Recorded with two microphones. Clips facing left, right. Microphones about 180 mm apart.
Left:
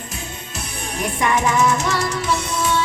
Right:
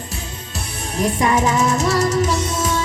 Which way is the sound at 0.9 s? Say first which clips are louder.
Right 3 dB; 35° right (ahead or behind).